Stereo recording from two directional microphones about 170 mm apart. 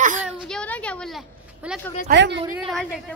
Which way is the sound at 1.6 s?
5° right (ahead or behind).